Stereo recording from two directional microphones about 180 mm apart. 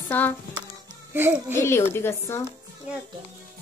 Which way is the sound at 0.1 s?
10° left (ahead or behind).